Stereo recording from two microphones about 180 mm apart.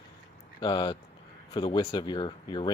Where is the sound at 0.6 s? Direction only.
25° left (ahead or behind).